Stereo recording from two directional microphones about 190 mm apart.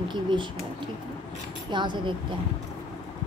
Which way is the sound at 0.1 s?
25° right (ahead or behind).